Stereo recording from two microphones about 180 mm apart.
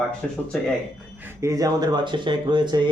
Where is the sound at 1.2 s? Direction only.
15° right (ahead or behind).